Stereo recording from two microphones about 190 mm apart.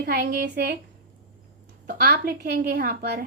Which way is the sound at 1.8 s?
55° right (ahead or behind).